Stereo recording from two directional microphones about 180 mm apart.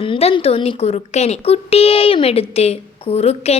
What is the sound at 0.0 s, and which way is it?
Speech, 30° left (ahead or behind).